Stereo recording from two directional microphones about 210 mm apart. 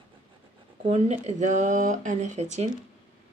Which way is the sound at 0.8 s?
30° right (ahead or behind).